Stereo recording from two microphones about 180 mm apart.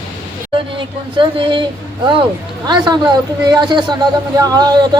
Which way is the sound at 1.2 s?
25° right (ahead or behind).